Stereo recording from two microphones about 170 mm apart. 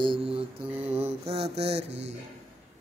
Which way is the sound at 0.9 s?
35° right (ahead or behind).